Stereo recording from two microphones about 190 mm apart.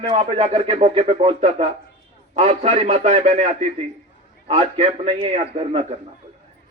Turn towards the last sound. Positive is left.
turn(degrees=-30)  # may be behind; listen again after turning